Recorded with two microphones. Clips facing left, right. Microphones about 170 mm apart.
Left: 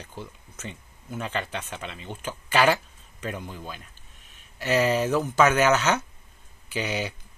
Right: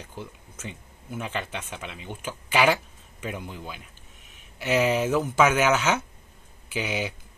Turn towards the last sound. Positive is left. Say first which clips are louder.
# even
turn(degrees=-5)  # may be behind; listen again after turning